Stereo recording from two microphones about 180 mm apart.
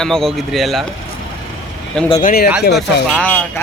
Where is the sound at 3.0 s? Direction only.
5° left (ahead or behind).